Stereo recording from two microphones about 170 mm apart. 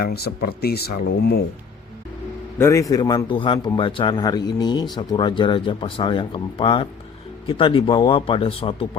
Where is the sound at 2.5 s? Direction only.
15° left (ahead or behind).